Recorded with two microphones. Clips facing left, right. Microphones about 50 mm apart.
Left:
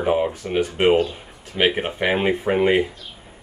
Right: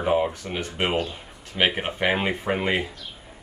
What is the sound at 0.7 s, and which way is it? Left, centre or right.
Speech, left.